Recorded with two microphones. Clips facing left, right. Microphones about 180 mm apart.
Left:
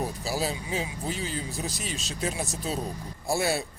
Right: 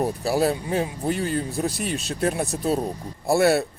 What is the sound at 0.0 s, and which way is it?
Speech, 60° right (ahead or behind).